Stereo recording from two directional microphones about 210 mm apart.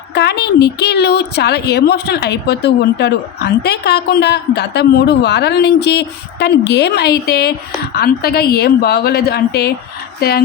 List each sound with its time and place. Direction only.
0.1 s a woman's voice: 50° left (ahead or behind)